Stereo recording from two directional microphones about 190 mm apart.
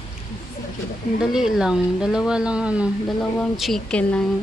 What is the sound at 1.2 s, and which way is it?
A woman's voice, 5° right (ahead or behind).